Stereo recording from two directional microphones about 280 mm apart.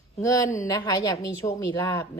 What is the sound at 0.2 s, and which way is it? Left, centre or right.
A woman's voice, centre.